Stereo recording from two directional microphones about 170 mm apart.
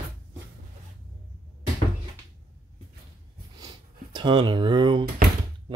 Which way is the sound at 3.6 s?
25° right (ahead or behind).